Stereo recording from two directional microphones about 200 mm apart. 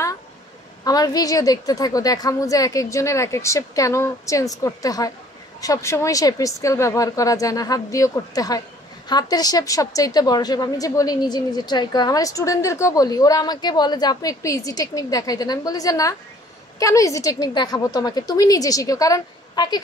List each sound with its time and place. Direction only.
0.8 s a woman's voice: 20° left (ahead or behind)